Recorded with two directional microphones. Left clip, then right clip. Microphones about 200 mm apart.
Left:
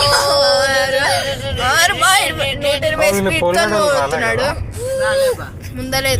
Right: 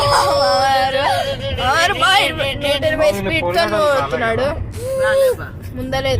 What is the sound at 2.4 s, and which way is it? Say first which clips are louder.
Speech: left 1 dB; 60° right (ahead or behind).